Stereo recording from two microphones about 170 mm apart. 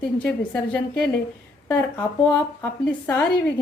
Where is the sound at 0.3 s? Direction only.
10° left (ahead or behind).